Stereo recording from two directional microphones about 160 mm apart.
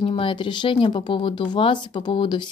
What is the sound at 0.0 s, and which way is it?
Speech, 35° left (ahead or behind).